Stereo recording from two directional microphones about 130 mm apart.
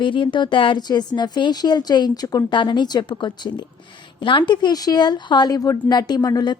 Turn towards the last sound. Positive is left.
turn(degrees=30)  # may be behind; listen again after turning